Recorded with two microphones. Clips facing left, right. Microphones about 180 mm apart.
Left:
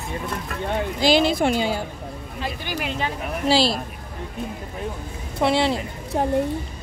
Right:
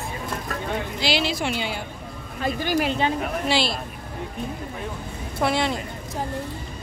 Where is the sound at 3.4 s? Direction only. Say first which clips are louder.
Left 7 dB; 35° left (ahead or behind).